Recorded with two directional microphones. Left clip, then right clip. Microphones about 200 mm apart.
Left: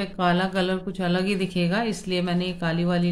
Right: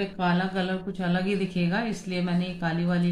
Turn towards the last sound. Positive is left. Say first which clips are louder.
# left 3 dB
turn(degrees=45)  # may be behind; listen again after turning